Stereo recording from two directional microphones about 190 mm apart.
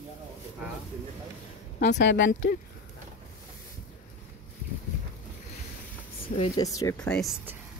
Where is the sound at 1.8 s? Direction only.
65° left (ahead or behind).